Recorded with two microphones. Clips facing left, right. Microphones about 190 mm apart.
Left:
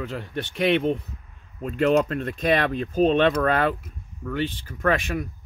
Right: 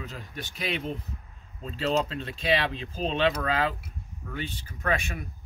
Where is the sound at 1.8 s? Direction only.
60° left (ahead or behind).